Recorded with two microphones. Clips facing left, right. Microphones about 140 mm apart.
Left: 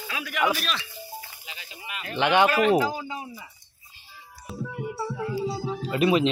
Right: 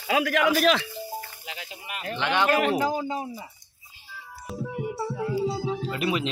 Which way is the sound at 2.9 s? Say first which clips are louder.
Right 5 dB; 35° right (ahead or behind).